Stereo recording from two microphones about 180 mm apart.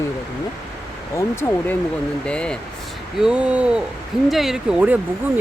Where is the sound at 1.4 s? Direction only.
15° left (ahead or behind).